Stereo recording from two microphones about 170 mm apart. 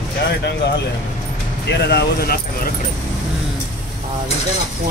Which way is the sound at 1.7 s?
75° left (ahead or behind).